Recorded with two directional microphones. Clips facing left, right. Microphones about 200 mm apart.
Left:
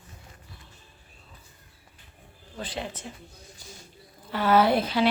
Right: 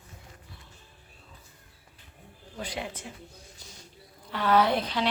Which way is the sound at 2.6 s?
10° right (ahead or behind).